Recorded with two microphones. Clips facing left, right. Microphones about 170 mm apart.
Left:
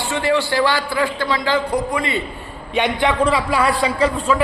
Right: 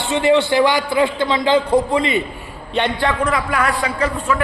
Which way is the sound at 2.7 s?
15° left (ahead or behind).